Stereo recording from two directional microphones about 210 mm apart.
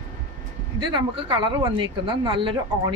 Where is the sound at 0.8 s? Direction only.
25° right (ahead or behind).